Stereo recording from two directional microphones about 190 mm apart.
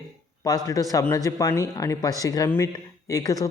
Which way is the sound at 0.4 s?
20° left (ahead or behind).